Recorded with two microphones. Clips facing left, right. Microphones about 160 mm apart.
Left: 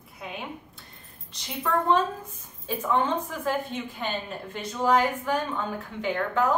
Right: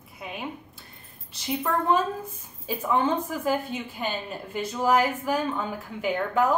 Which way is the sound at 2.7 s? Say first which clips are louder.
Right 1 dB; 10° right (ahead or behind).